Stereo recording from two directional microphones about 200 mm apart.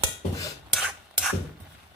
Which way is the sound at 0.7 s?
5° right (ahead or behind).